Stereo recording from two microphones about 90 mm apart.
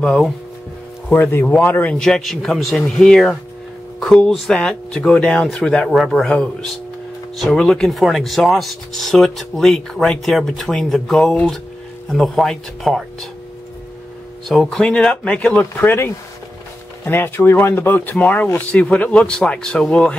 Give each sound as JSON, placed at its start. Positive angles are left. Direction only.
{"t": 0.0, "sound": "speech", "side_deg": 5}
{"t": 1.1, "sound": "speech", "side_deg": 20}
{"t": 2.0, "sound": "speech", "side_deg": 5}
{"t": 14.5, "sound": "speech", "side_deg": 0}